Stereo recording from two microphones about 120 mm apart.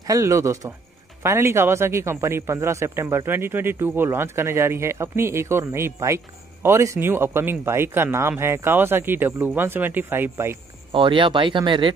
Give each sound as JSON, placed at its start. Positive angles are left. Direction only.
{"t": 0.0, "sound": "a man's voice", "side_deg": -25}
{"t": 10.9, "sound": "speech", "side_deg": -45}